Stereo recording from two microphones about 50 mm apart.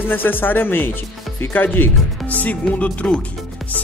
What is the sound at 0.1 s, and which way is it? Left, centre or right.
Speech, left.